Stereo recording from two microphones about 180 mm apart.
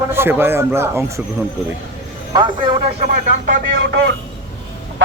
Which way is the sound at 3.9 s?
80° right.